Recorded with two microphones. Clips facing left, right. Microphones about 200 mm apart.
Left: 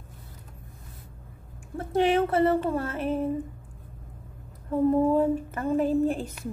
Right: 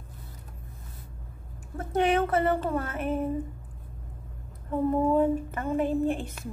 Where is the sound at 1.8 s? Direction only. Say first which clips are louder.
Left 2 dB; 30° left (ahead or behind).